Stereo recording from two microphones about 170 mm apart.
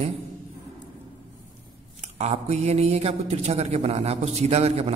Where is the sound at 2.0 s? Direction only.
40° right (ahead or behind).